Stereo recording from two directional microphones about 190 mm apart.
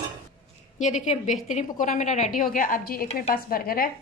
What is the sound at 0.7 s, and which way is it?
A woman's voice, 40° left (ahead or behind).